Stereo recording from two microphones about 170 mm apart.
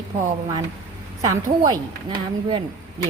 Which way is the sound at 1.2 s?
20° right (ahead or behind).